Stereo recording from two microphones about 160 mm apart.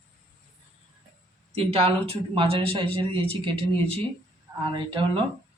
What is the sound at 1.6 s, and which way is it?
Speech, 35° right (ahead or behind).